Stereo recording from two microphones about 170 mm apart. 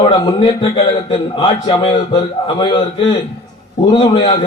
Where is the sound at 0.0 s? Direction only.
30° left (ahead or behind).